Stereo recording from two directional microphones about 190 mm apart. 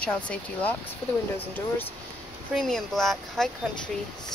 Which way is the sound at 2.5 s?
Centre (ahead or behind).